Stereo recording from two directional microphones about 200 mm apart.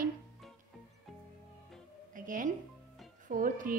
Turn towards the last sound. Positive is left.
turn(degrees=-40)  # may be behind; listen again after turning